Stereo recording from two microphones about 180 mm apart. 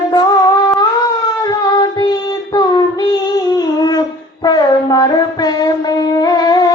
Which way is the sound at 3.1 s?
20° left (ahead or behind).